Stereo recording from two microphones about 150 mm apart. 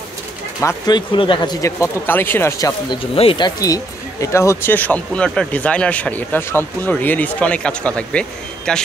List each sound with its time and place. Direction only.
0.6 s speech: 25° left (ahead or behind)
2.9 s speech: 40° left (ahead or behind); by 8.8 s 5° left (ahead or behind)